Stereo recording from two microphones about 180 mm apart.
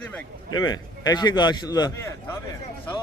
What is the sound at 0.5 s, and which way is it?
A man's voice, 25° left (ahead or behind).